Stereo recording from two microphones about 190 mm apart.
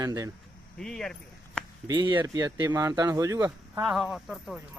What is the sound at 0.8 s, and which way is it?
Speech, 5° left (ahead or behind).